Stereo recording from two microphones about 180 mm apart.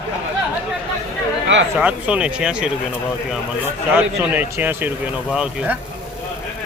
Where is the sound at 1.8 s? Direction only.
5° right (ahead or behind).